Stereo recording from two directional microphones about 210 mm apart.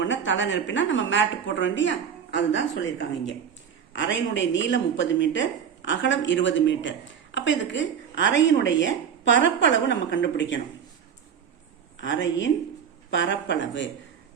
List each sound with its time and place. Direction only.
0.0 s a woman's voice: 60° left (ahead or behind)
11.9 s a woman's voice: 60° left (ahead or behind)